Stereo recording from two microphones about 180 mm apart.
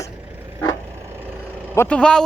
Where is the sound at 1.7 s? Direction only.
5° left (ahead or behind).